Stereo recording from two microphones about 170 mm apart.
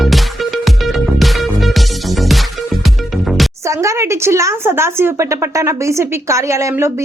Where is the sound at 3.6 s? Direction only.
15° right (ahead or behind).